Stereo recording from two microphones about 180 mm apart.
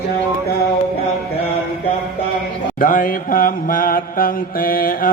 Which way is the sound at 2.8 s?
50° left (ahead or behind).